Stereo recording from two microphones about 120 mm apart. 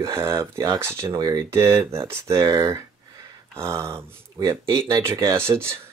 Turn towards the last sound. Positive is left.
turn(degrees=-20)  # may be behind; listen again after turning